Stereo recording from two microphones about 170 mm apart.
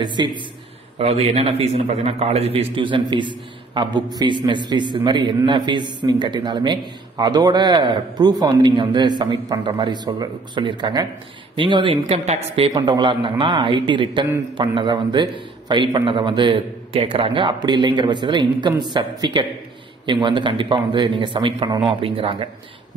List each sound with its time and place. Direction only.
0.0 s a man's voice: 25° right (ahead or behind)
12.7 s a man's voice: 25° right (ahead or behind)